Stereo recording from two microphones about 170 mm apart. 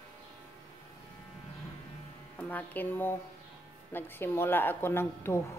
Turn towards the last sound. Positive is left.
turn(degrees=15)  # may be behind; listen again after turning